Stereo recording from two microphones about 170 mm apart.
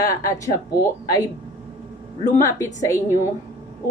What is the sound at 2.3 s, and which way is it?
Speech, 15° left (ahead or behind).